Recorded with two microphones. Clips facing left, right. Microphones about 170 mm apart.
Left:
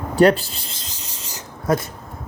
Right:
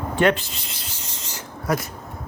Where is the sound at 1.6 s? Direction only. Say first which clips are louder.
Left 4 dB; 25° left (ahead or behind).